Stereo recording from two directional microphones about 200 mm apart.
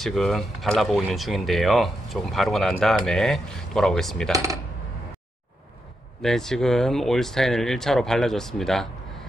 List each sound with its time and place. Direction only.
0.0 s speech: centre (ahead or behind)
4.3 s speech: 15° right (ahead or behind)
6.2 s speech: centre (ahead or behind)